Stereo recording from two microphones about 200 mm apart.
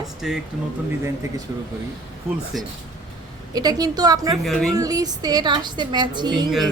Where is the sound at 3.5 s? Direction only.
20° right (ahead or behind).